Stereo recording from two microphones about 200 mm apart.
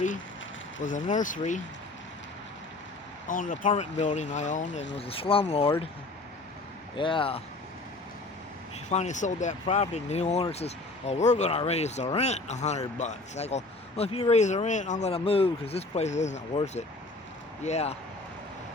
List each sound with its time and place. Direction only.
0.8 s speech: 40° left (ahead or behind)
3.2 s speech: 40° left (ahead or behind)
6.9 s speech: 25° left (ahead or behind)
8.9 s speech: 35° left (ahead or behind)